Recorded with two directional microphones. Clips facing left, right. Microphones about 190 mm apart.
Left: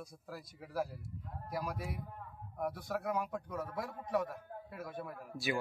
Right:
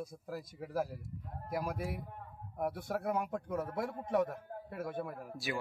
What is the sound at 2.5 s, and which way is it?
Speech, 25° right (ahead or behind).